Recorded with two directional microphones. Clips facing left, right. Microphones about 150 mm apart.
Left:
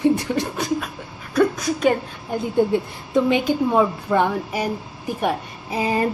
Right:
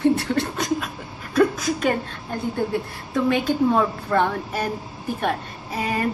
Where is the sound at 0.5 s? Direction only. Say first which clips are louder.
Left 1 dB; 5° left (ahead or behind).